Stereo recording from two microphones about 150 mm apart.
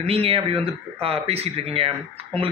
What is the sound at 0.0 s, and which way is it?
Speech, 40° right (ahead or behind).